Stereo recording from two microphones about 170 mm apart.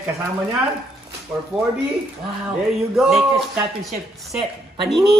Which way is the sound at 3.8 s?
Centre (ahead or behind).